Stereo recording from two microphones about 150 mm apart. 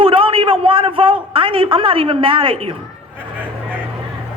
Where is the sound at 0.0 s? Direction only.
35° right (ahead or behind).